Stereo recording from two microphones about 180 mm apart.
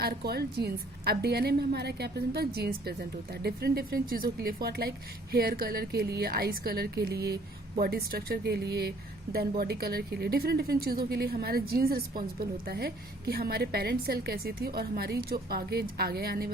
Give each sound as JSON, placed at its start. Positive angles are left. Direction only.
{"t": 0.0, "sound": "a woman's voice", "side_deg": -60}